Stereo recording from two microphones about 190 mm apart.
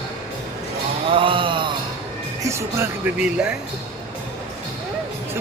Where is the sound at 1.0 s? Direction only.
25° right (ahead or behind).